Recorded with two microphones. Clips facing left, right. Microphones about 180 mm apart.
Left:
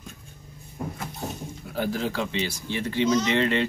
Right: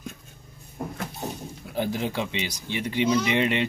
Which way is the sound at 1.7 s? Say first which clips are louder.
Even; 20° right (ahead or behind).